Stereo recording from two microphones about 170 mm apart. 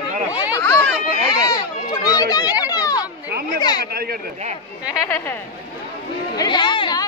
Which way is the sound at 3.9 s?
65° right (ahead or behind).